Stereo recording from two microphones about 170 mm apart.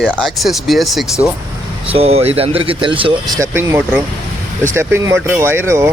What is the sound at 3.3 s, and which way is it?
Speech, 15° right (ahead or behind).